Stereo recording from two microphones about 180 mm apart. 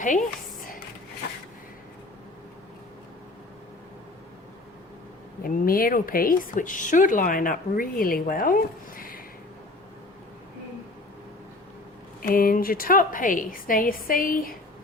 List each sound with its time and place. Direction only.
0.0 s speech: 45° left (ahead or behind)
5.4 s speech: 55° left (ahead or behind)
12.2 s speech: 50° left (ahead or behind)